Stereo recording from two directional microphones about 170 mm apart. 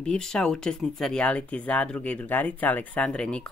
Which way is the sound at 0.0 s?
5° left (ahead or behind).